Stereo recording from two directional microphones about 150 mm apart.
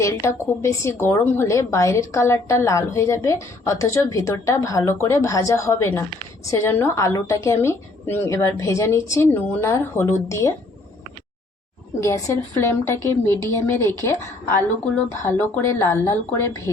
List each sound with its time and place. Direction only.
0.0 s a woman's voice: 20° left (ahead or behind)
11.9 s a woman's voice: 20° left (ahead or behind)